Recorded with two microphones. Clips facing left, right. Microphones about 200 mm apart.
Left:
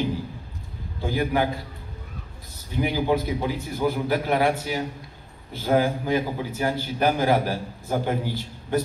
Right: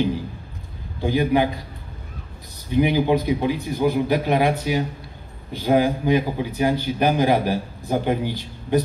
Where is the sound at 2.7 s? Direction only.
20° right (ahead or behind).